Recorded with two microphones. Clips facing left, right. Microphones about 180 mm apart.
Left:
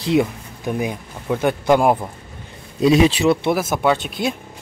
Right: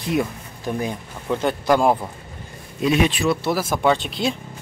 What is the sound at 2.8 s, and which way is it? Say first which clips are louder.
Speech: left 5 dB; 30° left (ahead or behind).